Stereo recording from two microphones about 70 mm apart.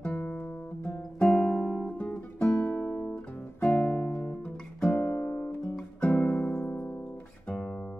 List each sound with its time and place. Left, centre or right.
0.0 s music: centre
2.4 s music: left
3.6 s guitar: centre
4.9 s guitar: left
5.2 s music: left